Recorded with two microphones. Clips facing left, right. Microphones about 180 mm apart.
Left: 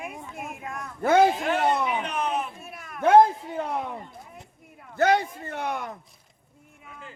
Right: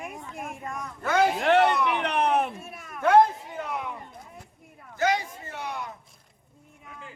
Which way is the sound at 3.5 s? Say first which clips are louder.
Left 4 dB; 35° left (ahead or behind).